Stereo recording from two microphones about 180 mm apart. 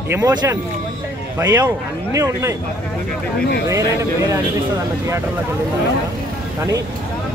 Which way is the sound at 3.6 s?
20° right (ahead or behind).